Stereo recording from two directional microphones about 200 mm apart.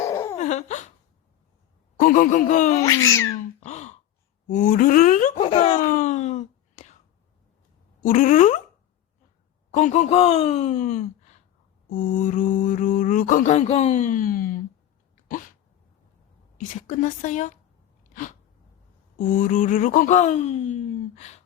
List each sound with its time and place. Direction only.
0.0 s laughter: 15° left (ahead or behind)
0.3 s laughter: 35° left (ahead or behind)
2.0 s mantra: 45° left (ahead or behind)
2.8 s cat: 15° left (ahead or behind)
3.6 s gasp: 35° left (ahead or behind)
4.4 s mantra: 40° left (ahead or behind)
5.5 s speech: 35° left (ahead or behind)
8.0 s mantra: 40° left (ahead or behind)
9.7 s mantra: 35° left (ahead or behind)
15.1 s sneeze: 40° left (ahead or behind)
16.7 s mantra: 40° left (ahead or behind)
18.1 s sneeze: 40° left (ahead or behind)
19.2 s mantra: 40° left (ahead or behind)